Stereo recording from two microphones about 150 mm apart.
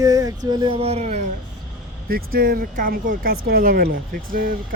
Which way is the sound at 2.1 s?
80° right.